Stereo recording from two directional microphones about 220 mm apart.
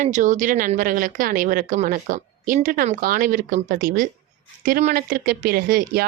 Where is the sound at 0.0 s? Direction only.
35° right (ahead or behind).